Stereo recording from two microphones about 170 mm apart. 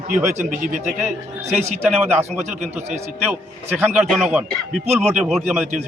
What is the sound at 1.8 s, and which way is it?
Speech, 10° right (ahead or behind).